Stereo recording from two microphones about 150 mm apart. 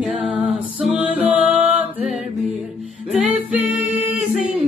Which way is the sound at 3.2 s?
5° right (ahead or behind).